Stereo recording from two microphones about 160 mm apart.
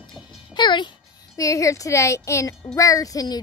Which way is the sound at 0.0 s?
25° left (ahead or behind).